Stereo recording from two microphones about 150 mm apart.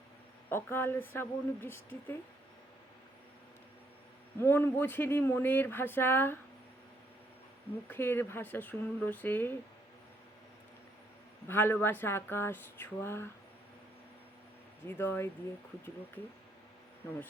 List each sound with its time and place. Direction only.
0.5 s speech: 15° left (ahead or behind)
4.4 s speech: 15° left (ahead or behind)
7.9 s speech: 15° left (ahead or behind)
11.4 s speech: 15° left (ahead or behind)
14.8 s speech: 15° left (ahead or behind)